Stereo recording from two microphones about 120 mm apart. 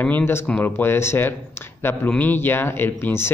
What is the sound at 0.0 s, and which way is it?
Speech, 15° left (ahead or behind).